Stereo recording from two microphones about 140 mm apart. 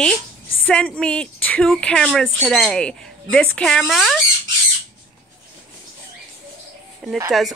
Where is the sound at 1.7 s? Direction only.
5° left (ahead or behind).